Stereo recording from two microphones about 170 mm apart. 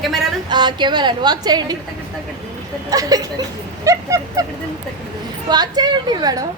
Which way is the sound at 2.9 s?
20° right (ahead or behind).